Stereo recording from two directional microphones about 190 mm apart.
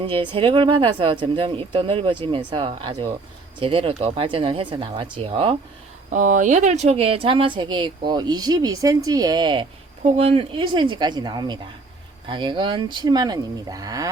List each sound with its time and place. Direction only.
0.0 s speech: 25° right (ahead or behind)
6.1 s speech: 40° right (ahead or behind); by 9.6 s 25° right (ahead or behind)
10.0 s speech: 35° right (ahead or behind); by 14.1 s 20° right (ahead or behind)